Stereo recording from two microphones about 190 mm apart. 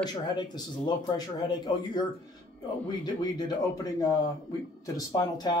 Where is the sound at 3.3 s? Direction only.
20° left (ahead or behind).